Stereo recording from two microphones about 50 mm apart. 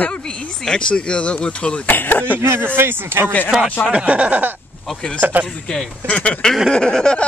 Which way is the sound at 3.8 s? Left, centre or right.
Right.